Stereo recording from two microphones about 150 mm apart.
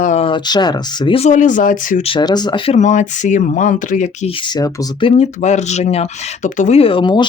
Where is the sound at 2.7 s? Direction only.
55° left (ahead or behind).